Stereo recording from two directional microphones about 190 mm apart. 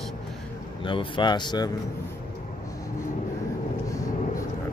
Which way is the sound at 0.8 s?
25° left (ahead or behind).